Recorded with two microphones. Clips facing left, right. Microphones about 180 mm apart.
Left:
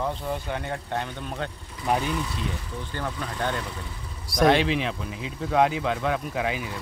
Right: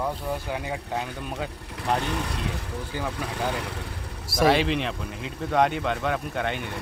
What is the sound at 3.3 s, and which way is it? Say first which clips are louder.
Speech: even; 75° right (ahead or behind).